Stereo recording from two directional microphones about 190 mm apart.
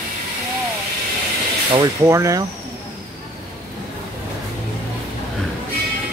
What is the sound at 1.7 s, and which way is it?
Speech, 15° right (ahead or behind).